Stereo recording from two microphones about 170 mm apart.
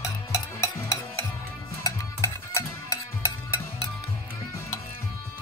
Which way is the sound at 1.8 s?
20° left (ahead or behind).